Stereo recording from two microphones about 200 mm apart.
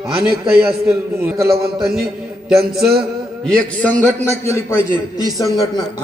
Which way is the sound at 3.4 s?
5° left (ahead or behind).